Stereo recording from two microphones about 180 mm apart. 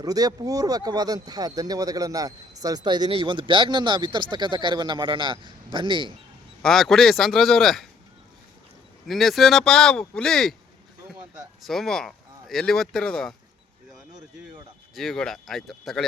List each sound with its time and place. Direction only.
0.0 s speech: 20° right (ahead or behind)
6.6 s speech: centre (ahead or behind)
9.0 s speech: centre (ahead or behind)
11.6 s speech: centre (ahead or behind)
14.9 s speech: centre (ahead or behind)